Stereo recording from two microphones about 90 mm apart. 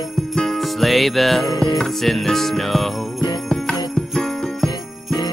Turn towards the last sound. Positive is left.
turn(degrees=5)  # may be behind; listen again after turning